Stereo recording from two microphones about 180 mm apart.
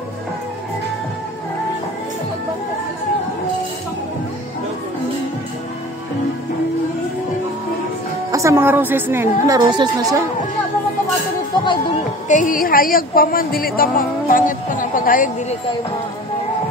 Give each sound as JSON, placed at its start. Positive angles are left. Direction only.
{"t": 8.3, "sound": "a woman's voice", "side_deg": -15}
{"t": 9.7, "sound": "a woman's voice", "side_deg": -25}
{"t": 11.6, "sound": "music", "side_deg": 30}
{"t": 12.3, "sound": "a woman's voice", "side_deg": 45}